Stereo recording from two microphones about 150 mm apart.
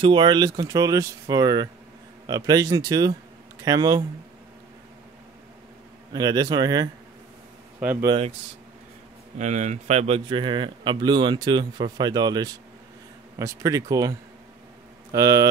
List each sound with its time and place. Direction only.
0.0 s speech: 30° right (ahead or behind)
6.1 s speech: 25° right (ahead or behind)
9.4 s a man's voice: 50° right (ahead or behind); by 14.1 s 20° right (ahead or behind)
15.1 s speech: 25° right (ahead or behind)